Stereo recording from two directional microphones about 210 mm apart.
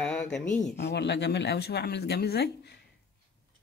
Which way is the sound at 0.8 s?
55° left (ahead or behind).